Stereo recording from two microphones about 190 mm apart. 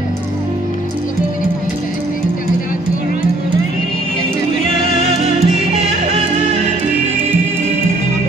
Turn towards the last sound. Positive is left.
turn(degrees=-35)  # may be behind; listen again after turning